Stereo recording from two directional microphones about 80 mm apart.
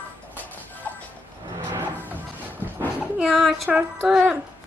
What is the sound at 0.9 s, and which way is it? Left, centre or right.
Vehicle, left.